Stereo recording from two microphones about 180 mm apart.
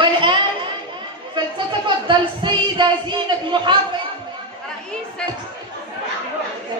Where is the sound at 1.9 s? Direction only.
25° right (ahead or behind).